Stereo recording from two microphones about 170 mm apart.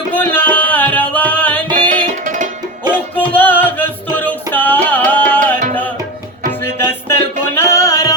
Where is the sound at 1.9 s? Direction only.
50° right (ahead or behind).